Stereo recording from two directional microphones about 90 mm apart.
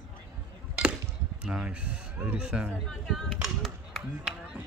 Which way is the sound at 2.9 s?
5° left (ahead or behind).